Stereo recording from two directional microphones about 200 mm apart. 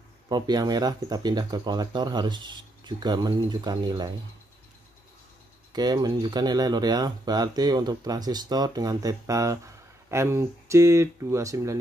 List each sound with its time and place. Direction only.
0.3 s speech: 20° right (ahead or behind)
5.7 s speech: 20° right (ahead or behind)